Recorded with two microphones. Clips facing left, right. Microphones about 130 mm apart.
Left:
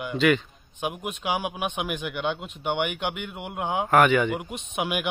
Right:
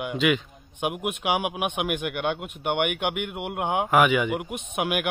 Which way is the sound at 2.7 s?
60° right (ahead or behind).